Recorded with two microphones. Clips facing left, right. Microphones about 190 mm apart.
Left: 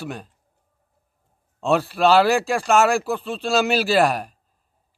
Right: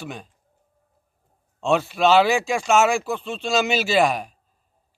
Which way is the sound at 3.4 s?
5° left (ahead or behind).